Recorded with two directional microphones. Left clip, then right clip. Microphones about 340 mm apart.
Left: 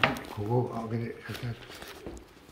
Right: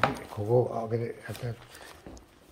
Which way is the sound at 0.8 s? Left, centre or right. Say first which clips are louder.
Right 5 dB; centre.